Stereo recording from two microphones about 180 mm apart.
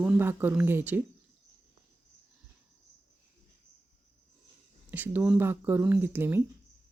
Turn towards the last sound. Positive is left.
turn(degrees=-10)  # may be behind; listen again after turning